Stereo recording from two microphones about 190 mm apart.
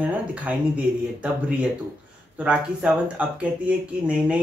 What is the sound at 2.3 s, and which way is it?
Speech, 5° right (ahead or behind).